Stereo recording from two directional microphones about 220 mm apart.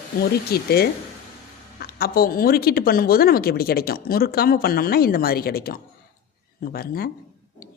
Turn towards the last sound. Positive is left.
turn(degrees=45)  # may be behind; listen again after turning